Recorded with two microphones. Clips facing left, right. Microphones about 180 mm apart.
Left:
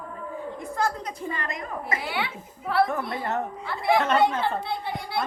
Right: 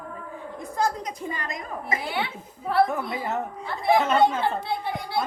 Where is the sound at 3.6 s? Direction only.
25° right (ahead or behind).